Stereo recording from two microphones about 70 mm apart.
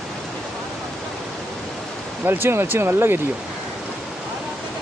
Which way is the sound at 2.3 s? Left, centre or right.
Right.